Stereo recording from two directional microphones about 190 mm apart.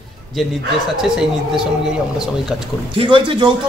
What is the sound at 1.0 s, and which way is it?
Speech, centre (ahead or behind).